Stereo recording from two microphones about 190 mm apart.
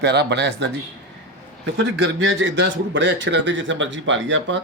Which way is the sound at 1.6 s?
80° right.